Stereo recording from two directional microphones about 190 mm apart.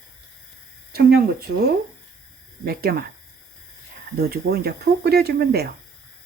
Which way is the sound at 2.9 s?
50° right (ahead or behind).